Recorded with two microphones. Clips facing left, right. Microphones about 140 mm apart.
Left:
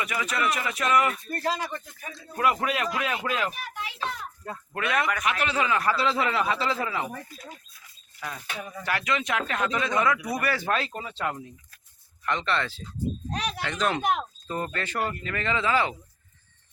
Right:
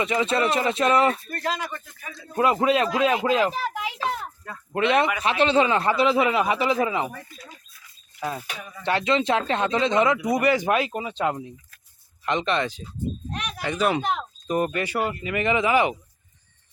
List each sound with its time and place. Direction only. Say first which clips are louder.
0.0 s a man's voice: right 6 dB; 25° right (ahead or behind)
1.2 s a man's voice: even; 25° left (ahead or behind)
2.3 s a man's voice: right 6 dB; 25° right (ahead or behind)
3.5 s a child's voice: right 8 dB; 90° right
4.7 s a man's voice: right 6 dB; 25° right (ahead or behind)
8.2 s a man's voice: right 5 dB; 30° right (ahead or behind); by 14.0 s 10° right (ahead or behind)
14.0 s speech: left 1 dB; 10° left (ahead or behind)
14.4 s speech: right 7 dB; 15° right (ahead or behind)